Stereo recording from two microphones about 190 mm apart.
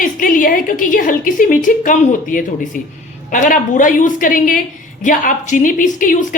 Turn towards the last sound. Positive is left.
turn(degrees=45)  # may be behind; listen again after turning